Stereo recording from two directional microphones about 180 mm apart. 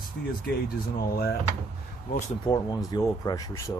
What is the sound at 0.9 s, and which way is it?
Speech, 55° left (ahead or behind).